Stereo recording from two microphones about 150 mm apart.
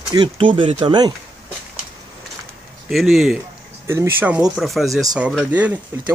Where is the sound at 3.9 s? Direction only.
15° right (ahead or behind).